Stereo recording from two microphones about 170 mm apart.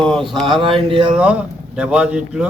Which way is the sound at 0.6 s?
30° right (ahead or behind).